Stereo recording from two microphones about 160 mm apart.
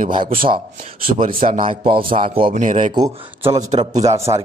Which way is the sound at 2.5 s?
50° right (ahead or behind).